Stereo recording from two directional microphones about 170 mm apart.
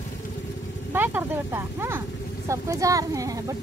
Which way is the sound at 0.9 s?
10° right (ahead or behind).